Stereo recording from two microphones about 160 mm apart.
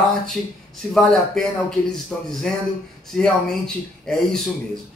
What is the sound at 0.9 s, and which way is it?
Speech, centre (ahead or behind).